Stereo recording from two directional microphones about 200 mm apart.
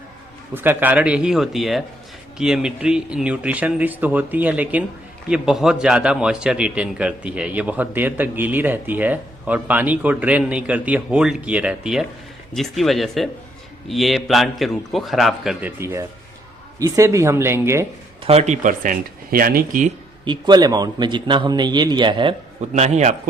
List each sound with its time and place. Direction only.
0.5 s a man's voice: 10° right (ahead or behind)
15.8 s a man's voice: 10° right (ahead or behind)
18.3 s speech: 35° right (ahead or behind)
20.2 s a man's voice: 20° right (ahead or behind)